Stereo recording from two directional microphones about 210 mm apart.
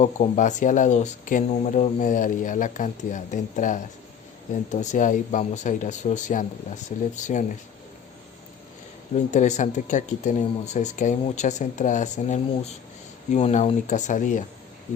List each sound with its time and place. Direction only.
0.0 s speech: 35° left (ahead or behind)
9.1 s speech: 35° left (ahead or behind)